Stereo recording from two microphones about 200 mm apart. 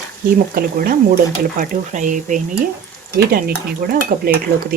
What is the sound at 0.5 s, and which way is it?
Dishes, 45° right (ahead or behind).